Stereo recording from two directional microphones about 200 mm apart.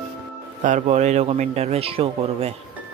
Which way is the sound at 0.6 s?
35° right (ahead or behind).